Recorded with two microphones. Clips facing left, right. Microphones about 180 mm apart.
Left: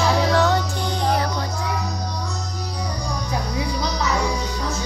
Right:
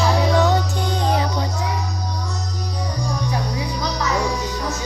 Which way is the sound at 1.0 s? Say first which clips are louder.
Even; 20° right (ahead or behind).